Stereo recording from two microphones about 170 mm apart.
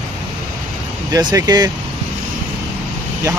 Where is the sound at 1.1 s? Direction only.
20° right (ahead or behind).